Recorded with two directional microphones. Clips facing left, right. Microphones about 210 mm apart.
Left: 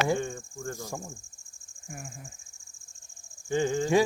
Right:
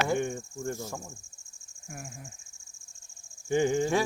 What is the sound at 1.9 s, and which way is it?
Speech, centre (ahead or behind).